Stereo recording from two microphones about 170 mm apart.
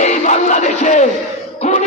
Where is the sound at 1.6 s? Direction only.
45° left (ahead or behind).